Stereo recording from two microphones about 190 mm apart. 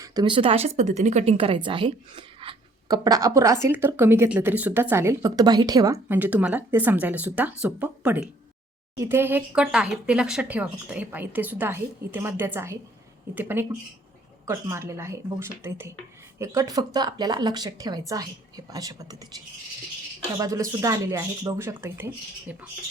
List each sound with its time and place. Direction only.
0.0 s a woman's voice: 20° right (ahead or behind)
20.4 s a woman's voice: 15° right (ahead or behind)